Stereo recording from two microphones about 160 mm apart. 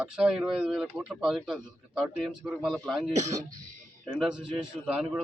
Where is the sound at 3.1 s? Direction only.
50° right (ahead or behind).